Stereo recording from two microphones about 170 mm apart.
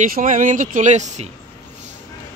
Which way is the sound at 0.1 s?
50° right (ahead or behind).